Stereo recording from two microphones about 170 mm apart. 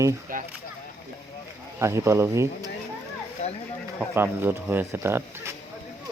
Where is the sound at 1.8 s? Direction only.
15° right (ahead or behind).